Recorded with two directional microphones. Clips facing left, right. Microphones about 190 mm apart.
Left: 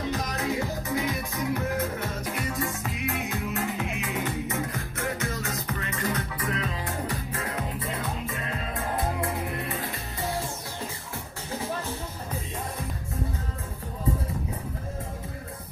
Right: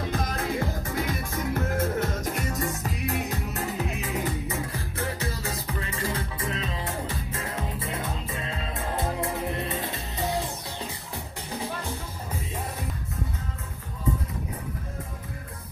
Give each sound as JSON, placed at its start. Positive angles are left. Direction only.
{"t": 0.1, "sound": "music", "side_deg": -50}